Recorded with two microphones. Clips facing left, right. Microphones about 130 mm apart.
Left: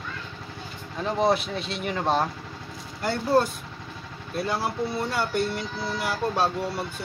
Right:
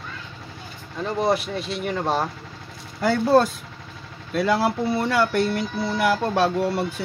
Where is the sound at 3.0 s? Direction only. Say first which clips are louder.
Right 5 dB; 90° right; by 6.5 s 75° right (ahead or behind).